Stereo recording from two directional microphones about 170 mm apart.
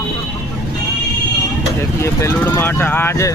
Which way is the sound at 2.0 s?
15° left (ahead or behind).